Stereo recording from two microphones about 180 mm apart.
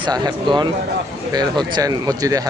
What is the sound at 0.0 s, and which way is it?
Speech, 25° right (ahead or behind).